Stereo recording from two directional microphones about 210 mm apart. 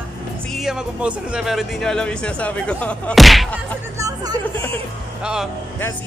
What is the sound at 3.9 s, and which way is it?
Speech, 15° right (ahead or behind).